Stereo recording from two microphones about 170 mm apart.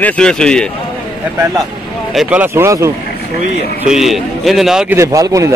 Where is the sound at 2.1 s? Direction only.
5° right (ahead or behind).